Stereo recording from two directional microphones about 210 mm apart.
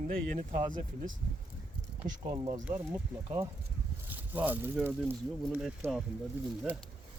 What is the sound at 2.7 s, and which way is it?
Speech, 15° right (ahead or behind).